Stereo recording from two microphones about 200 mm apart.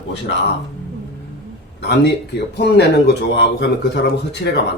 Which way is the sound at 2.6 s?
55° left (ahead or behind).